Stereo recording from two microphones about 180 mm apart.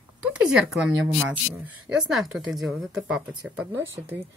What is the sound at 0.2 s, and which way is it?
A woman's voice, 5° right (ahead or behind).